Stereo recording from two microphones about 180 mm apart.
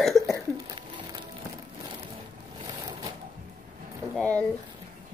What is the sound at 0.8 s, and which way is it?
Music, 25° right (ahead or behind).